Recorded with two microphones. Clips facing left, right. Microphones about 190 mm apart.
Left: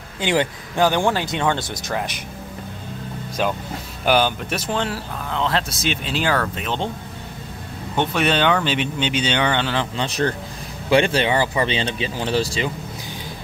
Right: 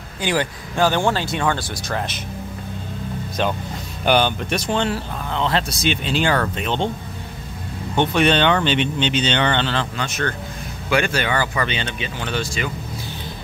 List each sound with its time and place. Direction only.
0.2 s speech: 20° left (ahead or behind)
4.0 s speech: 5° left (ahead or behind)
7.9 s speech: 5° left (ahead or behind)
9.9 s speech: 35° left (ahead or behind)